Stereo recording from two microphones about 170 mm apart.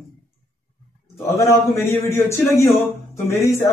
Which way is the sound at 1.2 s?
15° left (ahead or behind).